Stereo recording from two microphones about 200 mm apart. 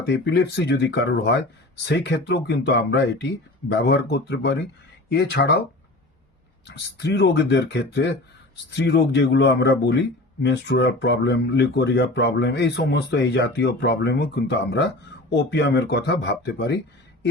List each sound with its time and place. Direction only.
0.1 s speech: 60° left (ahead or behind)
6.7 s speech: 60° left (ahead or behind)